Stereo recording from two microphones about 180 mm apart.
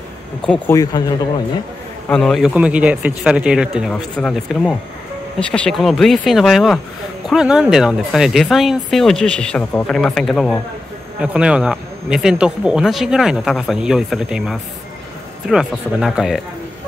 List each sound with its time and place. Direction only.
0.5 s speech: 15° left (ahead or behind)
2.0 s a man's voice: 5° left (ahead or behind)